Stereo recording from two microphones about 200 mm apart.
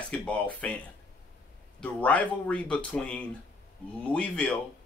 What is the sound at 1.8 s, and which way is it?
A man's voice, 5° left (ahead or behind).